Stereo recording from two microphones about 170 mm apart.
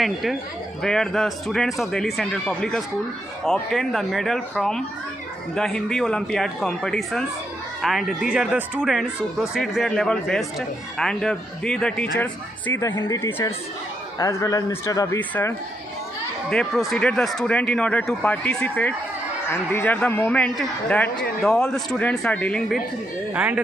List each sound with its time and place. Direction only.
0.0 s a man's voice: centre (ahead or behind)
23.3 s speech: 10° right (ahead or behind)